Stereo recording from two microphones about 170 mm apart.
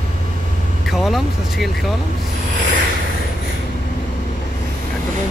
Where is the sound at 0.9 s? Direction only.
Centre (ahead or behind).